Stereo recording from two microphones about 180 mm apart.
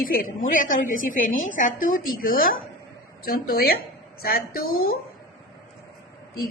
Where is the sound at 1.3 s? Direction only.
90° left.